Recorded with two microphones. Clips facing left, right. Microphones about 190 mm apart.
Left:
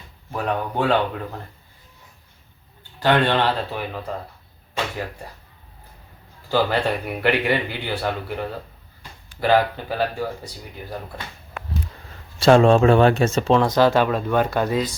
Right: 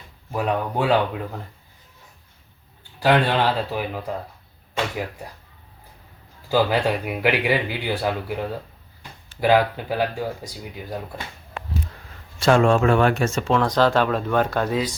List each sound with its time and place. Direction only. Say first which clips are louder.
0.3 s speech: right 1 dB; 10° right (ahead or behind)
3.0 s speech: even; 10° right (ahead or behind)
6.5 s speech: right 1 dB; 10° right (ahead or behind)
12.4 s speech: left 3 dB; 30° left (ahead or behind)
13.7 s speech: left 2 dB; 5° left (ahead or behind)